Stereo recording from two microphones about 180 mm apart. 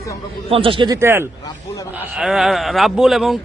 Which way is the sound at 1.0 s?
15° right (ahead or behind).